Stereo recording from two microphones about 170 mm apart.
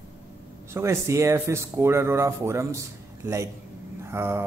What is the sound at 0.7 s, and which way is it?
Speech, 15° right (ahead or behind).